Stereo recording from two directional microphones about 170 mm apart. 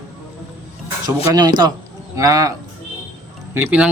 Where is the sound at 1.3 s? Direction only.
25° right (ahead or behind).